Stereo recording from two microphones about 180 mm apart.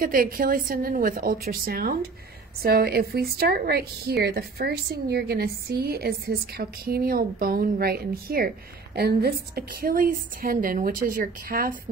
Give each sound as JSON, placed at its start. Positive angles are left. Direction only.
{"t": 0.0, "sound": "a woman's voice", "side_deg": -50}